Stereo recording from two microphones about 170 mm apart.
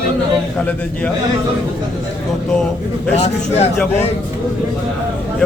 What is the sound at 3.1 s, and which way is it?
Speech, 40° left (ahead or behind).